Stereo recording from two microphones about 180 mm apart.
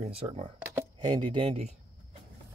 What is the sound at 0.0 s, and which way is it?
Speech, 30° right (ahead or behind).